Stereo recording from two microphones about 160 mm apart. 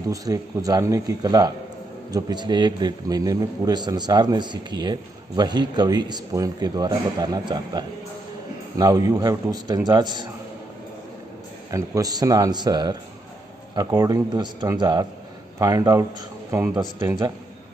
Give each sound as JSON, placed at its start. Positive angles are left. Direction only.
{"t": 0.1, "sound": "a man's voice", "side_deg": -20}
{"t": 11.7, "sound": "a man's voice", "side_deg": -20}